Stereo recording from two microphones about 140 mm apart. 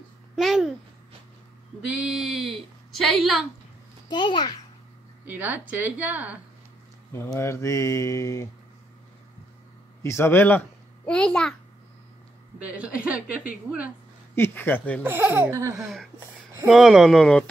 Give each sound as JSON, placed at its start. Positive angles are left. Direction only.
{"t": 0.4, "sound": "speech", "side_deg": 0}
{"t": 1.9, "sound": "a sound", "side_deg": -5}
{"t": 4.1, "sound": "a child's voice", "side_deg": 35}
{"t": 5.2, "sound": "speech", "side_deg": -10}
{"t": 7.1, "sound": "speech", "side_deg": 20}
{"t": 10.0, "sound": "speech", "side_deg": 20}
{"t": 12.6, "sound": "speech", "side_deg": -10}
{"t": 14.3, "sound": "speech", "side_deg": 15}
{"t": 15.0, "sound": "speech", "side_deg": -15}
{"t": 15.7, "sound": "speech", "side_deg": 0}